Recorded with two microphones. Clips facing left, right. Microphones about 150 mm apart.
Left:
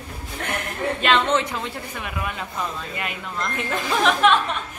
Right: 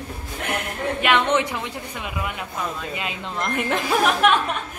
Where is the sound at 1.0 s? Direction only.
15° right (ahead or behind).